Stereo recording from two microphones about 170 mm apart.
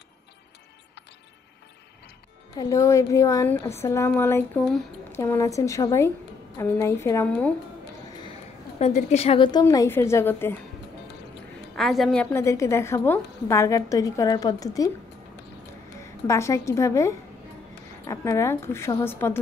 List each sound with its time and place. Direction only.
2.5 s a woman's voice: 20° left (ahead or behind); by 4.8 s 5° left (ahead or behind)
5.1 s a woman's voice: 15° left (ahead or behind)
8.7 s a woman's voice: 40° left (ahead or behind); by 10.5 s 15° left (ahead or behind)
11.7 s a woman's voice: centre (ahead or behind); by 14.9 s 20° left (ahead or behind)
16.3 s a woman's voice: 15° left (ahead or behind)